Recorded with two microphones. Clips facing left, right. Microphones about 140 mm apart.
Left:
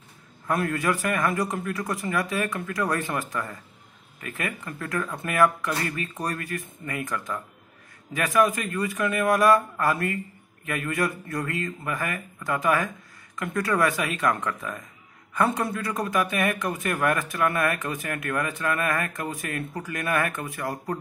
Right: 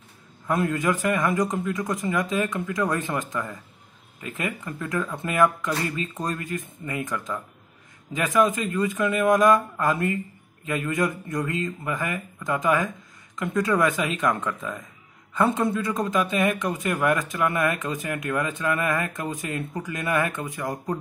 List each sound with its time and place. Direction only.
0.5 s a man's voice: 20° right (ahead or behind)